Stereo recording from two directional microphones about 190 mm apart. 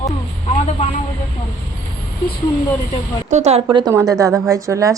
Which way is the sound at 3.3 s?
35° right (ahead or behind).